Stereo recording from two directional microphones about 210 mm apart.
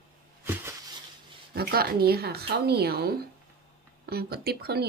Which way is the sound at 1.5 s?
45° right (ahead or behind).